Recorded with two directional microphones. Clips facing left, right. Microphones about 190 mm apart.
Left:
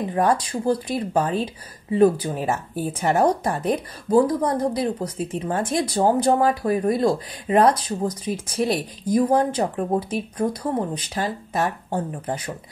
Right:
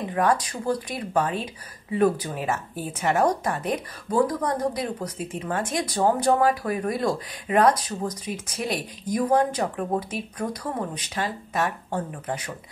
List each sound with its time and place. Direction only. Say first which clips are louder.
0.1 s speech: left 1 dB; 30° left (ahead or behind)